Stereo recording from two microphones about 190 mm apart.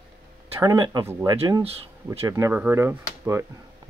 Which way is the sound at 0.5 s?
20° right (ahead or behind).